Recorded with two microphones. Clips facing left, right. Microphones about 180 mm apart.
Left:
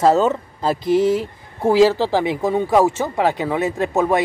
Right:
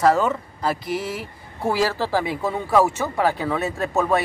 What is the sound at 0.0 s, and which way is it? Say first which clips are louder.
Speech: left 3 dB; 25° left (ahead or behind).